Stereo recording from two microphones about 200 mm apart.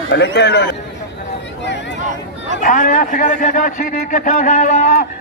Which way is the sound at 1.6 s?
60° left (ahead or behind).